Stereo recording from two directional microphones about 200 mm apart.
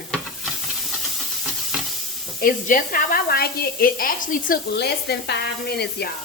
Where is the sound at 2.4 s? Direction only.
45° left (ahead or behind).